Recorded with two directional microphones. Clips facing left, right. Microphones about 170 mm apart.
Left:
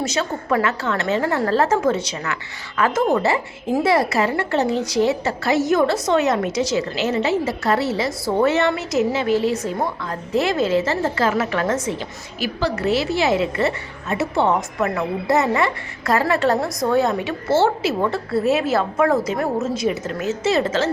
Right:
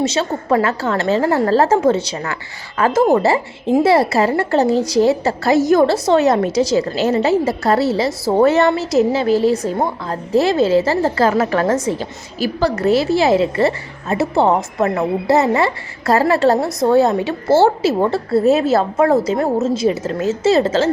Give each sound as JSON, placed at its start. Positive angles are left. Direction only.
{"t": 0.0, "sound": "a woman's voice", "side_deg": -30}